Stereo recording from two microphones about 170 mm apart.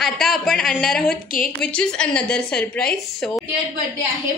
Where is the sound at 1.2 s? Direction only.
55° left (ahead or behind).